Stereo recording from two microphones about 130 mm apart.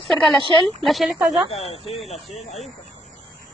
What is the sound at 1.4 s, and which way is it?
Speech, 55° left (ahead or behind).